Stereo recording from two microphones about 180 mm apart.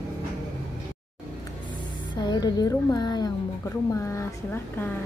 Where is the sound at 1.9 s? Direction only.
25° left (ahead or behind).